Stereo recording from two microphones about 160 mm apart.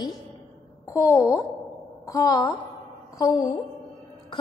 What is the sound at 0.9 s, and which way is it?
A woman's voice, 15° left (ahead or behind).